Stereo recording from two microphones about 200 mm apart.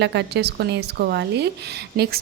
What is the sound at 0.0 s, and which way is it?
A woman's voice, 60° right (ahead or behind).